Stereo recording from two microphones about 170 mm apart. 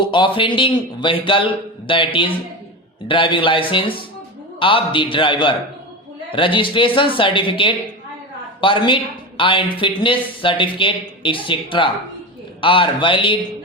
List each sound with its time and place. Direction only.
0.0 s a man's voice: 30° left (ahead or behind)